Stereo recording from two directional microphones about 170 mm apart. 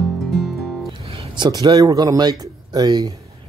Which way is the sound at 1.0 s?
35° right (ahead or behind).